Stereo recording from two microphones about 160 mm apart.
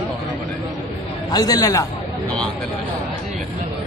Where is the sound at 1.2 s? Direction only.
25° left (ahead or behind).